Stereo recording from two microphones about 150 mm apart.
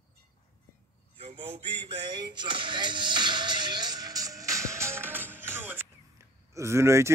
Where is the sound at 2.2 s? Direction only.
30° right (ahead or behind).